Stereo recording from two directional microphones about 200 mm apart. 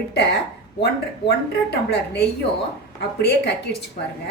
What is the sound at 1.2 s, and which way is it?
Speech, 55° left (ahead or behind).